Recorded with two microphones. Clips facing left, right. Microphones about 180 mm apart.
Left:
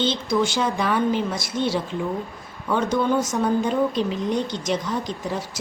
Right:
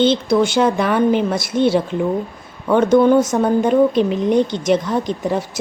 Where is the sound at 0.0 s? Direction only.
60° right (ahead or behind).